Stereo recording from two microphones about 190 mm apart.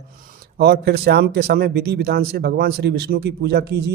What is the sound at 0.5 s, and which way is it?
Speech, 55° right (ahead or behind).